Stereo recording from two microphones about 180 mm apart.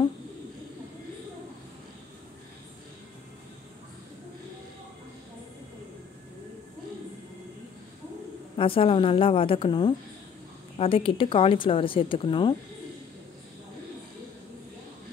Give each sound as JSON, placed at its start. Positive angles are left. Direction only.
{"t": 8.5, "sound": "speech", "side_deg": 30}